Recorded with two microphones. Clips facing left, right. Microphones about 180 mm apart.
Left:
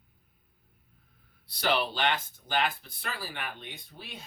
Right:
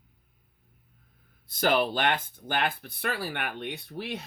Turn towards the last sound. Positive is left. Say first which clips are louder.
# right 11 dB
turn(degrees=-75)  # may be behind; listen again after turning